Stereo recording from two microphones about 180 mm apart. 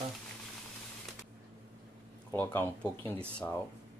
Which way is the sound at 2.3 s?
10° left (ahead or behind).